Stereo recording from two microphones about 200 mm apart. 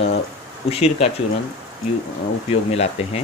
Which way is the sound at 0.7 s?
30° left (ahead or behind).